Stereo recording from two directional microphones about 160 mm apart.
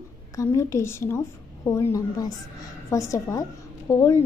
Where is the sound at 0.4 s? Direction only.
20° left (ahead or behind).